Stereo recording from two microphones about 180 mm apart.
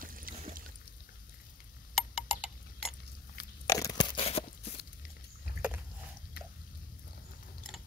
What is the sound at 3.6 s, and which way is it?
Crunch, 20° left (ahead or behind).